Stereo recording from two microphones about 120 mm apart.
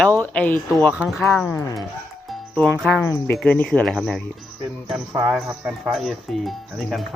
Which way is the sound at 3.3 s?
10° left (ahead or behind).